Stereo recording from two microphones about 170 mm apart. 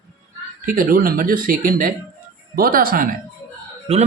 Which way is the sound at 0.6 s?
55° right (ahead or behind).